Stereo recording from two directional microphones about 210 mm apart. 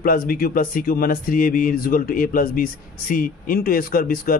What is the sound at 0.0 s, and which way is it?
Speech, 45° left (ahead or behind).